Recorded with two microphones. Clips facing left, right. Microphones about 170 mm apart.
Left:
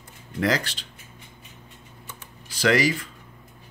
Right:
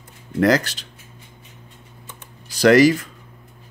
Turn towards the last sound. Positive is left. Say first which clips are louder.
# right 9 dB
turn(degrees=-40)  # may be behind; listen again after turning